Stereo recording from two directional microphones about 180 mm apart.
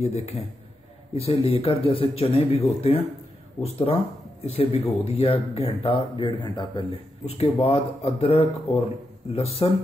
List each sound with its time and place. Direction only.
0.0 s speech: 35° left (ahead or behind)
3.6 s speech: 10° left (ahead or behind)
4.5 s speech: 35° left (ahead or behind)